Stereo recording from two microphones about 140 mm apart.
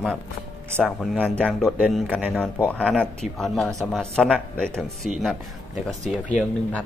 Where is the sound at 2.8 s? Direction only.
5° left (ahead or behind).